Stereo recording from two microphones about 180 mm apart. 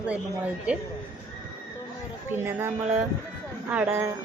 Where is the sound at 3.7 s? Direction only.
10° right (ahead or behind).